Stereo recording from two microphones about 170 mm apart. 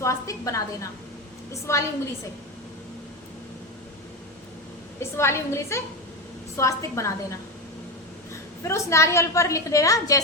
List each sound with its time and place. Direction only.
0.0 s a woman's voice: 20° left (ahead or behind)
4.9 s a woman's voice: 15° left (ahead or behind)
8.6 s a woman's voice: 15° left (ahead or behind)